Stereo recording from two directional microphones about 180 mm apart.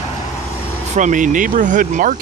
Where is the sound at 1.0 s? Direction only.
45° right (ahead or behind).